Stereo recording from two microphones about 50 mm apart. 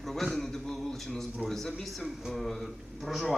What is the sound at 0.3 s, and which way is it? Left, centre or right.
Music, centre.